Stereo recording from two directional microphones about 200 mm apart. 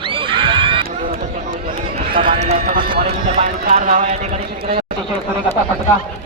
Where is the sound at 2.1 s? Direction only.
25° right (ahead or behind).